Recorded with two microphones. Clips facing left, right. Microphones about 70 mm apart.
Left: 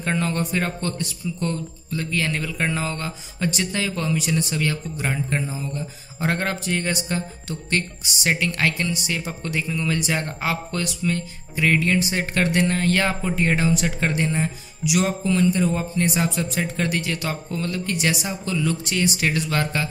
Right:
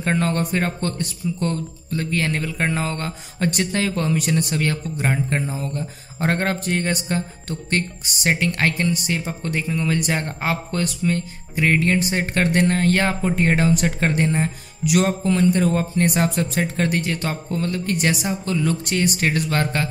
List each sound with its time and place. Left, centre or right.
0.0 s speech: right
2.8 s speech: right